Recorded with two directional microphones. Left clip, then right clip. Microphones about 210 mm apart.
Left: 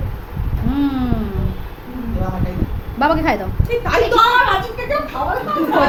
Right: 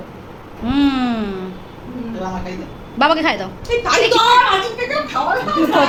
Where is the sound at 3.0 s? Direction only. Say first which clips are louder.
Right 1 dB; centre (ahead or behind).